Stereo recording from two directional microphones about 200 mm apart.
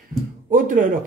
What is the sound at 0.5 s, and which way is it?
Speech, 40° right (ahead or behind).